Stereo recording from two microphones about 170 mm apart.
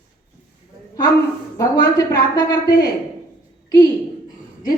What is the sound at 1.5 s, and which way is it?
Speech, 20° left (ahead or behind).